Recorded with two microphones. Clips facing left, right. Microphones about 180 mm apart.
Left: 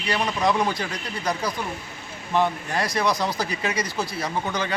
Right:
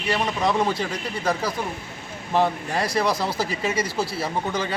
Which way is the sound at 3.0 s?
5° right (ahead or behind).